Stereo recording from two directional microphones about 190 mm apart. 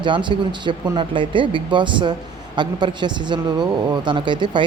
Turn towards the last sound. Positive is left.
turn(degrees=-25)  # may be behind; listen again after turning